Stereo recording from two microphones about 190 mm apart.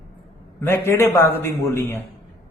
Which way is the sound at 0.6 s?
10° left (ahead or behind).